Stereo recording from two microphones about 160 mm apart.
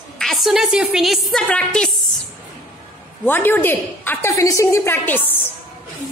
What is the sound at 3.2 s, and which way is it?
A woman's voice, 15° left (ahead or behind).